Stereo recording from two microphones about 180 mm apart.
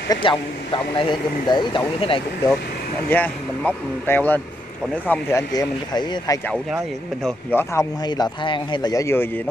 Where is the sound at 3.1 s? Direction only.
10° left (ahead or behind); by 6.4 s 25° left (ahead or behind).